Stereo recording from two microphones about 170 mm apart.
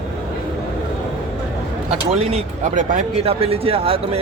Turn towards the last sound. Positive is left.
turn(degrees=-35)  # may be behind; listen again after turning